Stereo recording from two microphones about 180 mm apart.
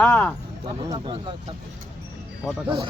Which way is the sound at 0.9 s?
25° right (ahead or behind).